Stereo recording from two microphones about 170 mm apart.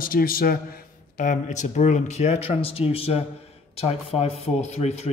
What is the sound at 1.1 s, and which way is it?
A man's voice, 50° left (ahead or behind).